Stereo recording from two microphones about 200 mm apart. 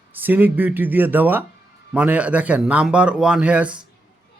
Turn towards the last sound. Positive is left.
turn(degrees=-5)  # may be behind; listen again after turning